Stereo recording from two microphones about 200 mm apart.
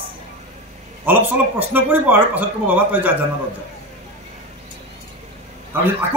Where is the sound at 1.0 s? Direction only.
10° right (ahead or behind).